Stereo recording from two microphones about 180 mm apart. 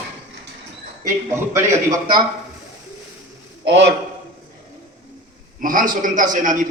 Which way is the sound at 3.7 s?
75° right (ahead or behind).